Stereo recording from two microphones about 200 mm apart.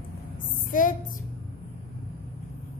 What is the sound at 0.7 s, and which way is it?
Speech, 40° left (ahead or behind).